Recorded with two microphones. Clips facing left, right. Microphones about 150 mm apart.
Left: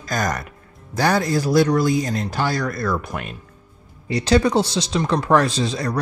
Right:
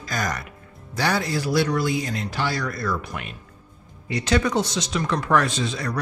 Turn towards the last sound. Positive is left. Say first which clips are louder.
# left 4 dB
turn(degrees=35)  # may be behind; listen again after turning